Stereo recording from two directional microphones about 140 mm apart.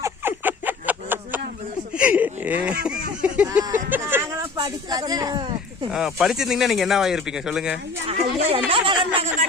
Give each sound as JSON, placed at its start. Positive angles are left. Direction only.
{"t": 0.0, "sound": "a sound", "side_deg": -15}
{"t": 5.9, "sound": "speech", "side_deg": 0}
{"t": 8.0, "sound": "speech", "side_deg": -45}